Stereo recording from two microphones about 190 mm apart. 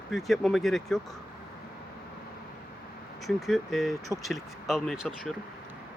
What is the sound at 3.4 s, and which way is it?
Speech, centre (ahead or behind).